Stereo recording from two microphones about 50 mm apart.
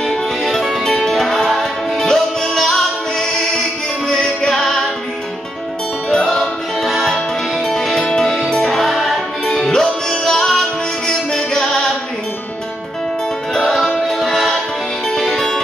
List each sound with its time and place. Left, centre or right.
0.0 s music: centre
4.1 s music: centre
6.1 s music: centre
6.8 s music: centre
13.5 s music: centre